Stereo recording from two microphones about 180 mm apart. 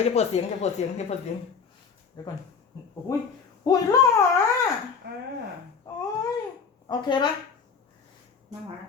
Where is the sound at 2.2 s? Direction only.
20° left (ahead or behind).